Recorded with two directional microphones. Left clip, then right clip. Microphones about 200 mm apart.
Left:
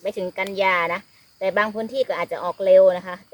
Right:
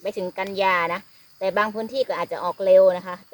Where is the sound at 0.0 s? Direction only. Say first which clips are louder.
Left 2 dB; 15° right (ahead or behind).